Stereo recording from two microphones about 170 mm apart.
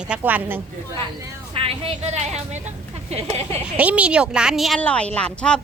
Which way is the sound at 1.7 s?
35° right (ahead or behind).